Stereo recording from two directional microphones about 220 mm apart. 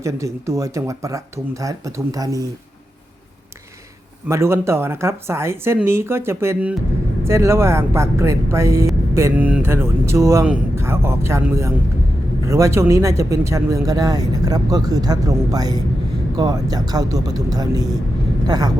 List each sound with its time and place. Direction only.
0.0 s speech: 15° right (ahead or behind)
4.3 s speech: 10° right (ahead or behind)